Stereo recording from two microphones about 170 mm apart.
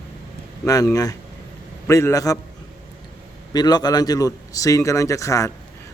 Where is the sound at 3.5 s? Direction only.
25° left (ahead or behind).